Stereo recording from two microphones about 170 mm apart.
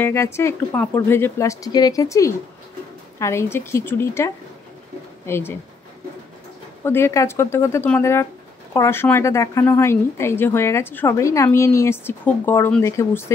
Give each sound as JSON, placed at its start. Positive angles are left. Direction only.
{"t": 0.0, "sound": "a woman's voice", "side_deg": 15}
{"t": 6.8, "sound": "a woman's voice", "side_deg": 15}